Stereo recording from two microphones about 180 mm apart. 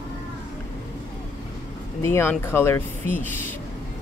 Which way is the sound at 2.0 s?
15° left (ahead or behind).